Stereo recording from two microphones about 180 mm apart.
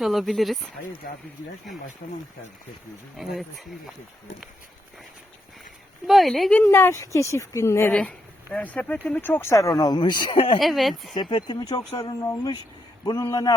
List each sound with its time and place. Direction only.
0.0 s speech: centre (ahead or behind)
3.2 s speech: centre (ahead or behind)
6.1 s speech: centre (ahead or behind); by 10.6 s 30° left (ahead or behind)
10.6 s speech: centre (ahead or behind)
11.1 s speech: 25° left (ahead or behind)